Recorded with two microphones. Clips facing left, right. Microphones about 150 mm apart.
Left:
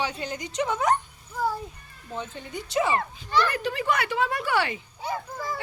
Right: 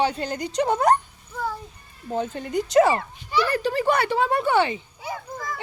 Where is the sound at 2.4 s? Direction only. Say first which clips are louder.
Right 9 dB; 85° right.